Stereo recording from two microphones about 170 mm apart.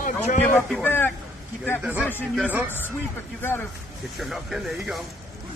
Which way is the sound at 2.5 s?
10° right (ahead or behind).